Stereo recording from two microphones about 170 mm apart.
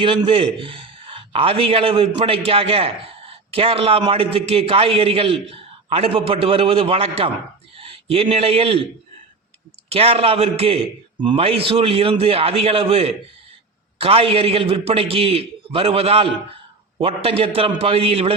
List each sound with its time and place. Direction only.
0.0 s a man's voice: 30° right (ahead or behind)
9.9 s a man's voice: 35° right (ahead or behind)